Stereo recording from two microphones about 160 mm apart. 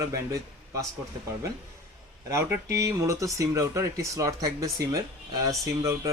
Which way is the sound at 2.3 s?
20° right (ahead or behind).